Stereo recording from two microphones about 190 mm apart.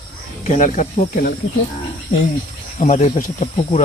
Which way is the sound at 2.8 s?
35° left (ahead or behind).